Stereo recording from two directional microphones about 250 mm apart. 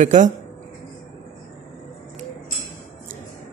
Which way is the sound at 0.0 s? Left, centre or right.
Right.